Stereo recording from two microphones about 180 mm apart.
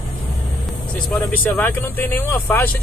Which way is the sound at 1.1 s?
10° left (ahead or behind).